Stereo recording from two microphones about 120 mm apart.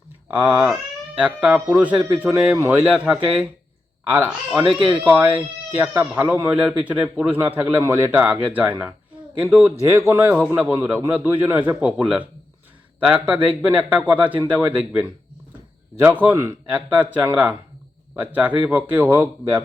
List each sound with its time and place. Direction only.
0.3 s speech: 10° right (ahead or behind)
2.8 s speech: 10° right (ahead or behind)
9.8 s speech: 20° right (ahead or behind)
16.0 s speech: 15° right (ahead or behind)